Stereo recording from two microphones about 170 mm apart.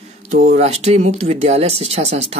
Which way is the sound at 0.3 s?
45° right (ahead or behind).